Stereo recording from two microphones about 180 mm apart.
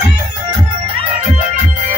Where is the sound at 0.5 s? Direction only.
35° right (ahead or behind).